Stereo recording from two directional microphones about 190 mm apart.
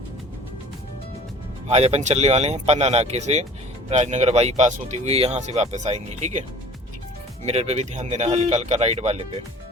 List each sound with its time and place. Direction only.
1.6 s speech: 35° right (ahead or behind)
7.4 s speech: 35° right (ahead or behind)